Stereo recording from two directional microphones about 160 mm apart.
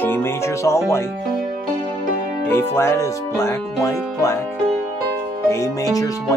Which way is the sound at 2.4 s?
15° left (ahead or behind).